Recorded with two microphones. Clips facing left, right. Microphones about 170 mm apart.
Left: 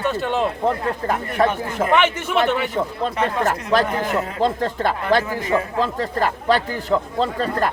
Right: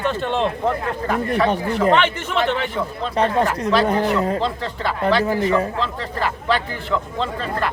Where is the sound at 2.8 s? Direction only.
40° left (ahead or behind).